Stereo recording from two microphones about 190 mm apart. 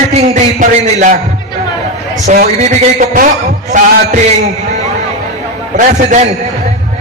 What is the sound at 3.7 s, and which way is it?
Speech, 40° right (ahead or behind).